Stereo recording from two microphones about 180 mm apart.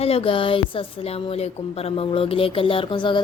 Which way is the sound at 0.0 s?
30° left (ahead or behind).